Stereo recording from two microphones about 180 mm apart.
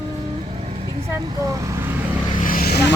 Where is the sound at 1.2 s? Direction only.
20° right (ahead or behind).